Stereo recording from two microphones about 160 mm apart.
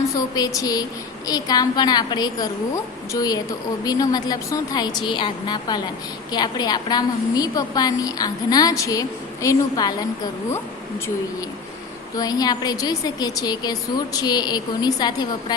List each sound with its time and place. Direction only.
0.3 s a woman's voice: 25° left (ahead or behind)
12.1 s a woman's voice: 25° left (ahead or behind)